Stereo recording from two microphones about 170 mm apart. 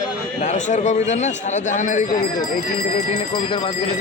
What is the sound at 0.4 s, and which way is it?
A man's voice, 45° left (ahead or behind).